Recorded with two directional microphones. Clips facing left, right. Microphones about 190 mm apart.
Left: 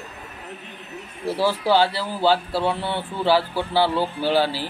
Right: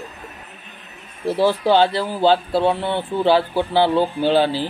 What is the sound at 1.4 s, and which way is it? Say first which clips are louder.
Speech: right 4 dB; 20° right (ahead or behind).